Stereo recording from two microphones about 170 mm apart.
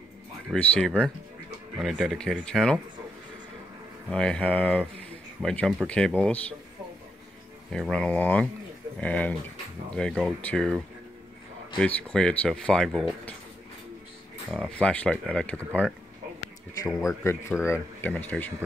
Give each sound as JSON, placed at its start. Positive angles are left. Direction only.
{"t": 0.5, "sound": "speech", "side_deg": 5}
{"t": 4.1, "sound": "speech", "side_deg": 5}
{"t": 7.7, "sound": "speech", "side_deg": 5}
{"t": 11.8, "sound": "speech", "side_deg": 5}
{"t": 14.5, "sound": "speech", "side_deg": 5}
{"t": 17.2, "sound": "speech", "side_deg": 15}